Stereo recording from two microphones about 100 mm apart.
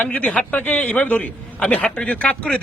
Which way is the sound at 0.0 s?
15° left (ahead or behind).